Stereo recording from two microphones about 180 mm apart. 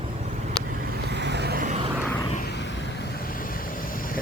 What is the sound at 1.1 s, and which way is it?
Vehicle, 70° right (ahead or behind).